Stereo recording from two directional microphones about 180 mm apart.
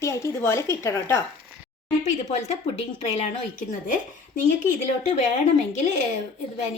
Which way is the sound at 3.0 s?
35° left (ahead or behind).